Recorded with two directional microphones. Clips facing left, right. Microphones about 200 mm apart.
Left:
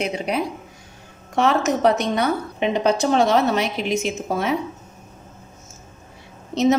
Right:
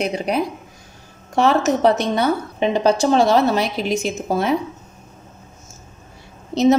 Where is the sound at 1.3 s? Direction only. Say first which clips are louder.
Right 3 dB; 30° right (ahead or behind).